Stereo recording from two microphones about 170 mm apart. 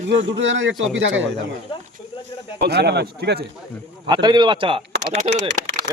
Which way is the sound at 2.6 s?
75° right (ahead or behind).